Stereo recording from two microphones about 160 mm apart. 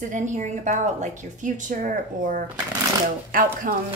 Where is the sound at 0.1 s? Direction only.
50° right (ahead or behind).